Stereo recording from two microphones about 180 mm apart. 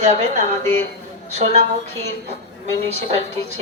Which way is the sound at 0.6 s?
10° left (ahead or behind).